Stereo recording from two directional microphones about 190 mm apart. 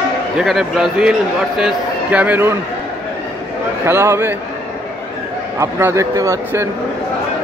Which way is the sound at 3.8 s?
15° right (ahead or behind).